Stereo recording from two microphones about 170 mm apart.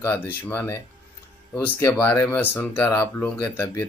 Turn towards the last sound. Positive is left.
turn(degrees=10)  # may be behind; listen again after turning